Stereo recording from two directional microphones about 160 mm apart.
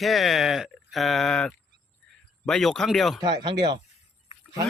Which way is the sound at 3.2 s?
30° right (ahead or behind).